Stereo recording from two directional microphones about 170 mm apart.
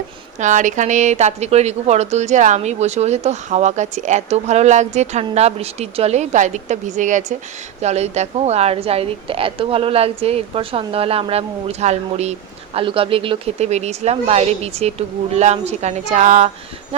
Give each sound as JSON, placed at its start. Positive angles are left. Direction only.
{"t": 0.3, "sound": "a woman's voice", "side_deg": -45}